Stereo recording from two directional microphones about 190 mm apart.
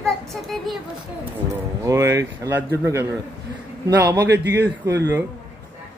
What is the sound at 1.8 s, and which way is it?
Speech, 15° right (ahead or behind).